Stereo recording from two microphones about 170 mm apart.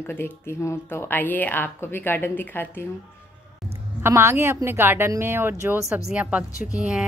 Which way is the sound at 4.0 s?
15° right (ahead or behind).